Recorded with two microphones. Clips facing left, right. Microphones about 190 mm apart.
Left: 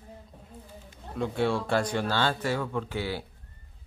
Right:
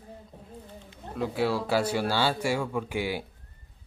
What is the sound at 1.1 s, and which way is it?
Speech, 5° right (ahead or behind).